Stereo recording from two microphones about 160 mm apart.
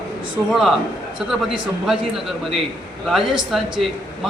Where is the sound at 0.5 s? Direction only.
5° right (ahead or behind).